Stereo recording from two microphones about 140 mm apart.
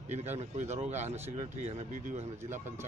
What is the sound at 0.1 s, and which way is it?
Speech, 55° right (ahead or behind).